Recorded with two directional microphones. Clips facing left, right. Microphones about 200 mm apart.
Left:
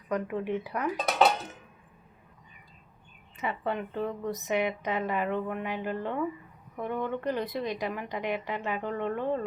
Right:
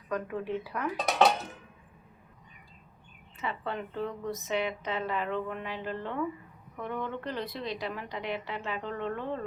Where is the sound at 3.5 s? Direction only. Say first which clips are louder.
Left 3 dB; 15° left (ahead or behind).